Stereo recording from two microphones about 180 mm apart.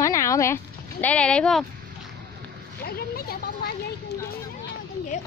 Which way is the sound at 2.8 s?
60° left (ahead or behind).